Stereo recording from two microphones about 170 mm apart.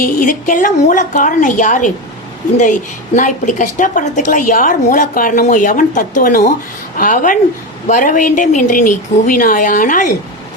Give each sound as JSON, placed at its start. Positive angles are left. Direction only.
{"t": 0.0, "sound": "a woman's voice", "side_deg": 50}
{"t": 3.2, "sound": "a woman's voice", "side_deg": 50}